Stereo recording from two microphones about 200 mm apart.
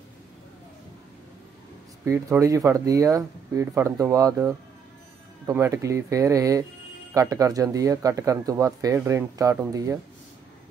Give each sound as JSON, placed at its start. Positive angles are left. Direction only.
{"t": 2.0, "sound": "speech", "side_deg": -15}